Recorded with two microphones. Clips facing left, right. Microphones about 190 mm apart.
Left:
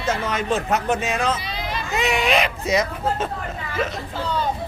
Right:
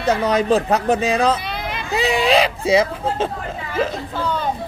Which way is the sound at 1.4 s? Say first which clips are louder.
Right 2 dB; 60° right (ahead or behind).